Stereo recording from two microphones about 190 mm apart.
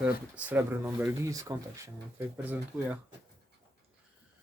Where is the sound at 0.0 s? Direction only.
5° right (ahead or behind).